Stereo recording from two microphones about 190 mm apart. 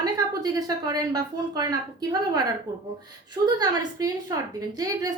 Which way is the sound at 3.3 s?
20° right (ahead or behind).